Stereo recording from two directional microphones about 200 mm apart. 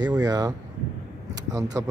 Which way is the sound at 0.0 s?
20° right (ahead or behind).